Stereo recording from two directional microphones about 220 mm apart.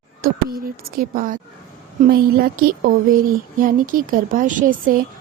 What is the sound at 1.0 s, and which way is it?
Speech, 40° right (ahead or behind).